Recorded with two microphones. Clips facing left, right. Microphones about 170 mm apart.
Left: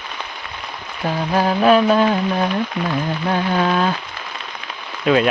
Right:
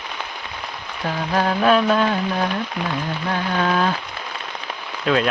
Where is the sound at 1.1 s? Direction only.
15° left (ahead or behind).